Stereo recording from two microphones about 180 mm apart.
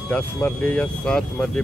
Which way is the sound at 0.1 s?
10° left (ahead or behind).